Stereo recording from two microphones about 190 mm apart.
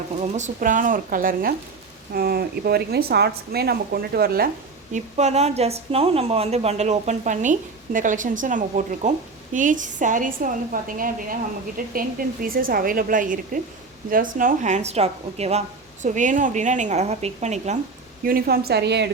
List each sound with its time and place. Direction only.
0.2 s a woman's voice: 40° right (ahead or behind)
4.9 s a woman's voice: 40° right (ahead or behind)
18.3 s a woman's voice: 50° right (ahead or behind)
18.6 s a woman's voice: 60° right (ahead or behind)